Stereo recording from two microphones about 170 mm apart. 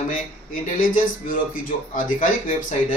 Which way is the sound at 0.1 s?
55° left (ahead or behind).